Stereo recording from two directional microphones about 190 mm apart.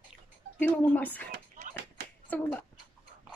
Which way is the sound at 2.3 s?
10° left (ahead or behind).